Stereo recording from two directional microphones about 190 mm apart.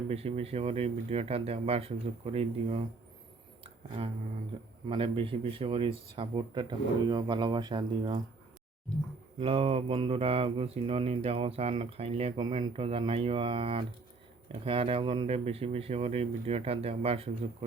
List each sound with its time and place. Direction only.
0.1 s mantra: 35° right (ahead or behind)
3.6 s a sound: 30° right (ahead or behind)
4.9 s speech: 25° right (ahead or behind)
9.4 s mantra: 30° right (ahead or behind)